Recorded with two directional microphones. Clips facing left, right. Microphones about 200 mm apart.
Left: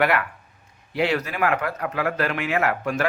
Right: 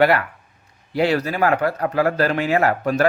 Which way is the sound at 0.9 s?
35° right (ahead or behind).